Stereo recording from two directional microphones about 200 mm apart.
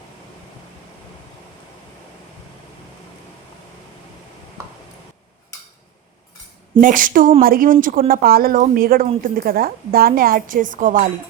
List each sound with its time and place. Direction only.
6.7 s a woman's voice: 40° right (ahead or behind)